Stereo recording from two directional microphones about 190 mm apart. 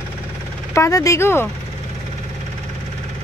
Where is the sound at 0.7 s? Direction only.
15° left (ahead or behind).